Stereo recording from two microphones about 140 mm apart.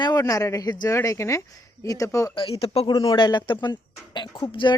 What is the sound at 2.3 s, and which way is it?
Speech, 45° left (ahead or behind).